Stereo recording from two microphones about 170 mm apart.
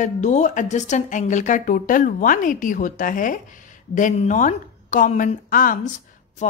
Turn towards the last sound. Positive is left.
turn(degrees=45)  # may be behind; listen again after turning